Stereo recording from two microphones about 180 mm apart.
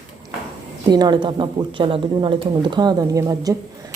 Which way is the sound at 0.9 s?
25° right (ahead or behind).